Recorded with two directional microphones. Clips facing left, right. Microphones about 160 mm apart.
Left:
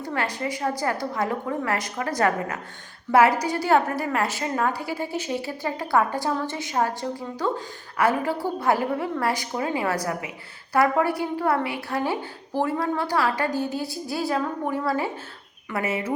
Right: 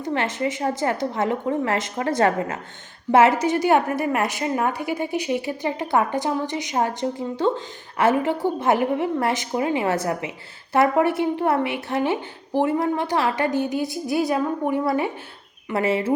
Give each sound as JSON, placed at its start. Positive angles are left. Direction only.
{"t": 0.0, "sound": "a woman's voice", "side_deg": -25}
{"t": 15.7, "sound": "a woman's voice", "side_deg": -30}